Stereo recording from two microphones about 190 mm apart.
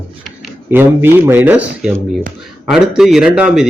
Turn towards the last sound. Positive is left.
turn(degrees=-5)  # may be behind; listen again after turning